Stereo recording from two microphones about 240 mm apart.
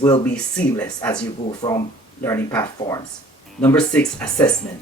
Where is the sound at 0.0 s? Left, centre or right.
Centre.